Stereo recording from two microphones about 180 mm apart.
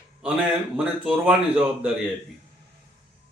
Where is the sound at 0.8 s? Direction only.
5° right (ahead or behind).